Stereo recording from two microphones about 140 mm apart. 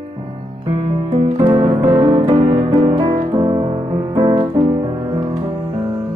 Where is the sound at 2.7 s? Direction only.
45° right (ahead or behind).